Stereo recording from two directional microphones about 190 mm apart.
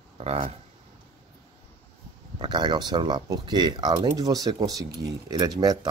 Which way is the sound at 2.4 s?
25° right (ahead or behind).